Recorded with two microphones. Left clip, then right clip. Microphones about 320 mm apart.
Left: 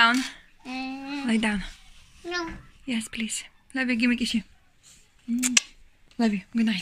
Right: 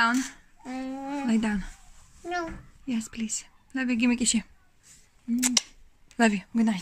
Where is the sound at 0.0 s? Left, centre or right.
Centre.